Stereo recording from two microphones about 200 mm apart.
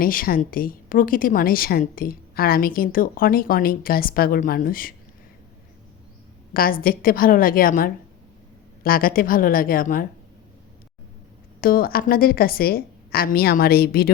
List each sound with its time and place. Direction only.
0.0 s a woman's voice: 45° left (ahead or behind)
6.5 s a woman's voice: 45° left (ahead or behind)
11.6 s a woman's voice: 45° left (ahead or behind)